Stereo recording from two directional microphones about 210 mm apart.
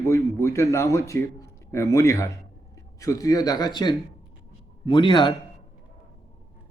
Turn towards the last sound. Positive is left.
turn(degrees=20)  # may be behind; listen again after turning